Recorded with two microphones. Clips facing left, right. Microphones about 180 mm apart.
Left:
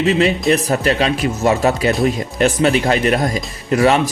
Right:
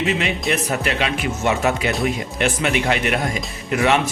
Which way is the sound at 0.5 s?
35° left (ahead or behind).